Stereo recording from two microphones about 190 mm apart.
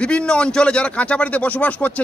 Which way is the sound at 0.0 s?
5° left (ahead or behind).